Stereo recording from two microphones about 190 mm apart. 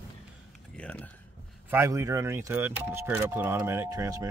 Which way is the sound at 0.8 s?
5° left (ahead or behind).